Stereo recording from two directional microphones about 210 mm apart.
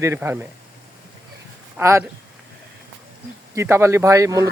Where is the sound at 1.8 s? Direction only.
15° right (ahead or behind).